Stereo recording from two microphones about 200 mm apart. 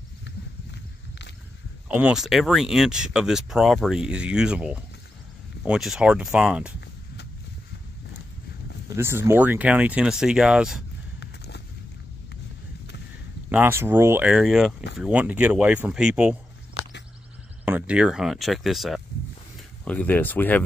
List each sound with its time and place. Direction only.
1.9 s speech: 5° right (ahead or behind)
8.8 s speech: 15° right (ahead or behind)
11.1 s a sound: 60° left (ahead or behind)
13.5 s speech: 10° right (ahead or behind)
17.6 s speech: 5° right (ahead or behind); by 20.6 s 10° left (ahead or behind)